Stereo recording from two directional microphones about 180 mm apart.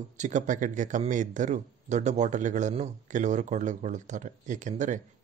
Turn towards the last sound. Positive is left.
turn(degrees=-45)  # may be behind; listen again after turning